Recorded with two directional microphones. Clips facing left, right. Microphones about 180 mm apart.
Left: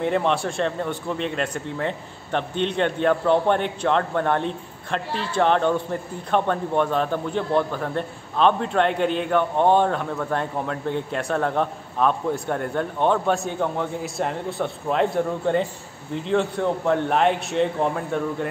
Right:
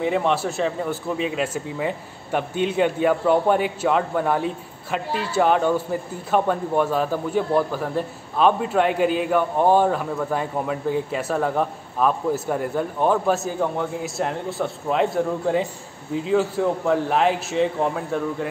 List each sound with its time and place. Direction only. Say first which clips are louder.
0.0 s a man's voice: right 1 dB; centre (ahead or behind)